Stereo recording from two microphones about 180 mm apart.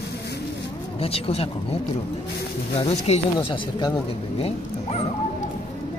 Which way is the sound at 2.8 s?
35° left (ahead or behind).